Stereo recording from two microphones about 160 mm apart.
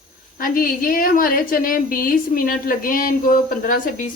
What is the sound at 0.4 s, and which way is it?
Speech, 60° left (ahead or behind).